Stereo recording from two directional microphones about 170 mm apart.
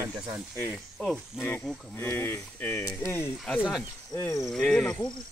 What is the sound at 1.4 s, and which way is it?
Speech, 15° left (ahead or behind).